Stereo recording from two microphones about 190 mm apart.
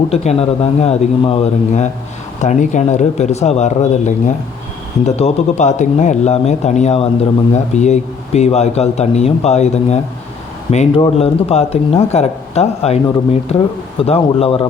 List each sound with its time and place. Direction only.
0.1 s speech: 35° left (ahead or behind)